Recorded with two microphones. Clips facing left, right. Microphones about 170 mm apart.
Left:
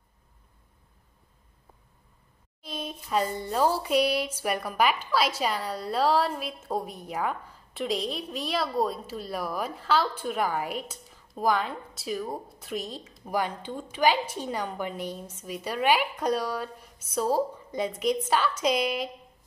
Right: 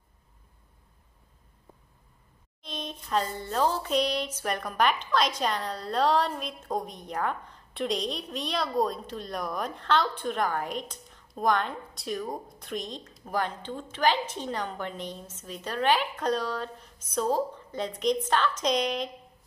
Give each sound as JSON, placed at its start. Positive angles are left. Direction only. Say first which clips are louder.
{"t": 2.6, "sound": "music", "louder": "left 2 dB", "side_deg": 5}